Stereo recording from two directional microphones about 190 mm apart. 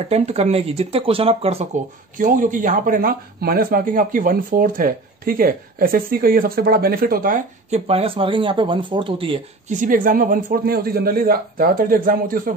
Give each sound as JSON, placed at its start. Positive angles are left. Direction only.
{"t": 0.1, "sound": "speech", "side_deg": -35}
{"t": 2.1, "sound": "speech", "side_deg": -45}
{"t": 7.7, "sound": "speech", "side_deg": -30}
{"t": 9.7, "sound": "speech", "side_deg": -45}